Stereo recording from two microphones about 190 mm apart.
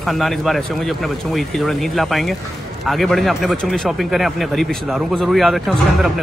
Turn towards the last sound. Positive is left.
turn(degrees=0)  # may be behind; listen again after turning